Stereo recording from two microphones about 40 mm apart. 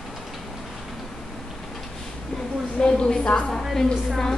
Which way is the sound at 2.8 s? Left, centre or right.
Centre.